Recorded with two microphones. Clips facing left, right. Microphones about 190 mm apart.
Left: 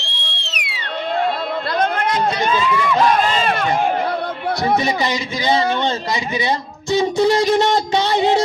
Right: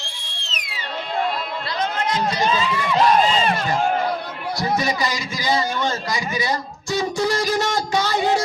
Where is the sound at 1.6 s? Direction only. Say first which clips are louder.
Left 5 dB; 55° left (ahead or behind).